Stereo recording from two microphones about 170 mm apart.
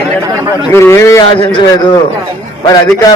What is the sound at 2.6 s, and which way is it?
Speech, 25° left (ahead or behind).